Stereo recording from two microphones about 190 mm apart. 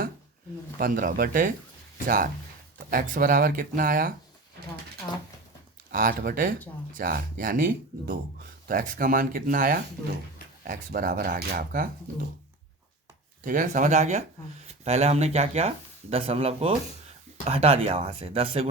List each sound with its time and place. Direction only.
0.8 s speech: 45° right (ahead or behind)
5.9 s speech: 45° right (ahead or behind)
13.4 s speech: 45° right (ahead or behind)